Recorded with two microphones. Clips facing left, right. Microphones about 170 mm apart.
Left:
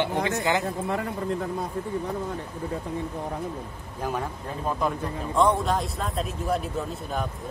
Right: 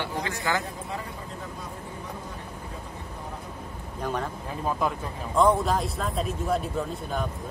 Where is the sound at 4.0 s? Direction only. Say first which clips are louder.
Left 1 dB; 5° left (ahead or behind).